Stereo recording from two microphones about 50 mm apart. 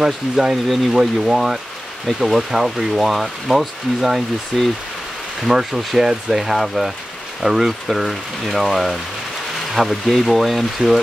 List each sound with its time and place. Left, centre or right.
0.0 s speech: centre